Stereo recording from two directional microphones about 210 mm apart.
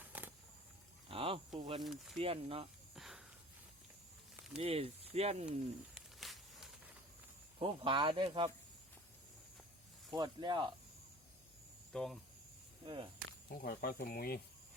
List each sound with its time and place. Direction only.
0.0 s a sound: 10° right (ahead or behind)
1.0 s a sound: 25° right (ahead or behind)
1.5 s speech: 25° right (ahead or behind)
1.8 s speech: centre (ahead or behind)
2.1 s speech: 25° right (ahead or behind)
2.9 s a sound: centre (ahead or behind)
4.5 s speech: 25° right (ahead or behind)
5.5 s a sound: centre (ahead or behind)
7.6 s speech: 25° right (ahead or behind)
10.1 s speech: 20° right (ahead or behind)
11.9 s speech: centre (ahead or behind)
12.8 s speech: 25° right (ahead or behind)
13.5 s speech: 45° left (ahead or behind)